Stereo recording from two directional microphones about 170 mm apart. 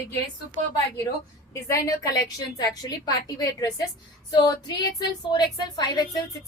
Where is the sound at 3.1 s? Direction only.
20° left (ahead or behind).